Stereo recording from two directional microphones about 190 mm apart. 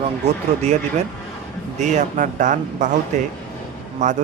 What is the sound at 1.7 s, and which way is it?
Speech, 40° right (ahead or behind).